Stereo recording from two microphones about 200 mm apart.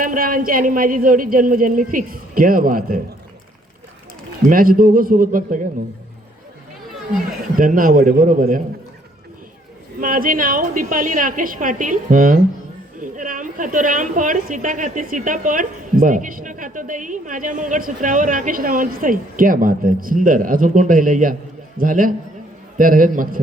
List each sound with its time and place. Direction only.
0.0 s a woman's voice: 45° right (ahead or behind)
4.4 s a woman's voice: 45° right (ahead or behind)
7.5 s a man's voice: 45° right (ahead or behind)
10.0 s a woman's voice: 45° right (ahead or behind)